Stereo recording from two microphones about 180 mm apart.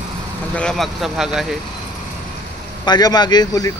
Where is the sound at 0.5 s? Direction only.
5° left (ahead or behind).